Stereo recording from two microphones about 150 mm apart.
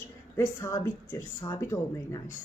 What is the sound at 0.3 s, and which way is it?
Speech, 20° left (ahead or behind).